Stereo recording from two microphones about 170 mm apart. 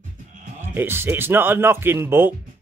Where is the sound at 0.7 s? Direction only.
15° right (ahead or behind).